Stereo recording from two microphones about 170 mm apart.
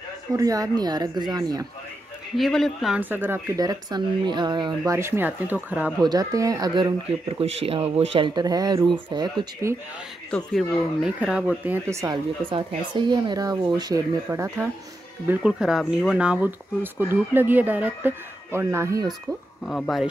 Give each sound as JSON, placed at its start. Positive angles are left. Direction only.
{"t": 0.3, "sound": "speech", "side_deg": -20}
{"t": 2.3, "sound": "speech", "side_deg": 0}
{"t": 4.9, "sound": "speech", "side_deg": -15}
{"t": 6.0, "sound": "speech", "side_deg": -20}
{"t": 10.3, "sound": "speech", "side_deg": 5}
{"t": 11.1, "sound": "speech", "side_deg": -5}
{"t": 12.4, "sound": "speech", "side_deg": -30}
{"t": 15.2, "sound": "speech", "side_deg": -5}
{"t": 19.0, "sound": "speech", "side_deg": 0}